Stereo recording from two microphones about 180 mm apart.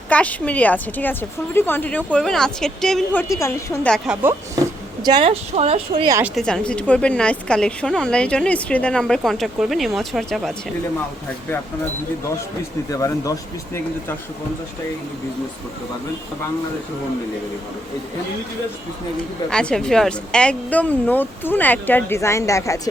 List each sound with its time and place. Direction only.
0.1 s a woman's voice: 10° left (ahead or behind)
3.8 s a woman's voice: centre (ahead or behind)
5.0 s speech: 25° right (ahead or behind)
6.3 s a woman's voice: 5° left (ahead or behind)
12.9 s speech: 20° left (ahead or behind)
19.5 s a woman's voice: 5° left (ahead or behind)